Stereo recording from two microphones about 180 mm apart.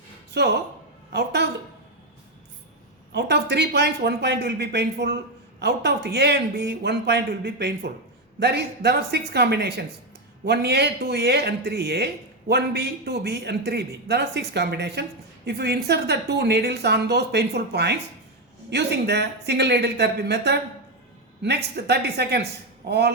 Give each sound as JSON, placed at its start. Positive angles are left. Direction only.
{"t": 0.3, "sound": "a woman's voice", "side_deg": -70}
{"t": 3.1, "sound": "a woman's voice", "side_deg": -70}